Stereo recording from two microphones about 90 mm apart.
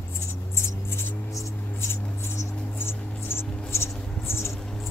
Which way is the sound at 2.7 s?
25° left (ahead or behind).